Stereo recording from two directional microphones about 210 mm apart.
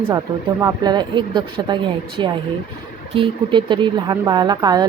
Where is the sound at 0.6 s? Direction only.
20° right (ahead or behind).